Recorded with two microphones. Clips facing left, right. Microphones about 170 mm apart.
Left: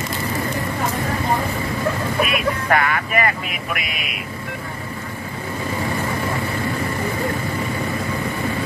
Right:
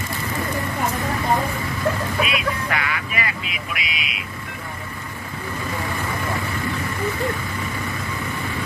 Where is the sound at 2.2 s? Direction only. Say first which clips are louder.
Left 3 dB; 50° left (ahead or behind).